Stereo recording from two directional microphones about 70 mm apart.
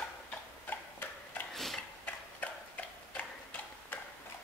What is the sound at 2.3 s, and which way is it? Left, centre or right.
Tick-tock, left.